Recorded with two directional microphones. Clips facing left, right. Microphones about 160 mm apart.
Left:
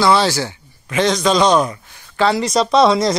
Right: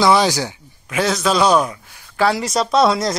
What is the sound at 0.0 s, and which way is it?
Speech, 15° right (ahead or behind).